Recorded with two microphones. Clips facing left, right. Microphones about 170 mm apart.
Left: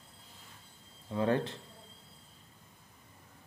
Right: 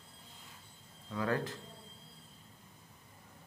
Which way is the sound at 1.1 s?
25° left (ahead or behind).